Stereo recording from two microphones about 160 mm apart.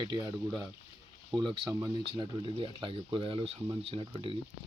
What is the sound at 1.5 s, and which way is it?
Speech, 30° right (ahead or behind).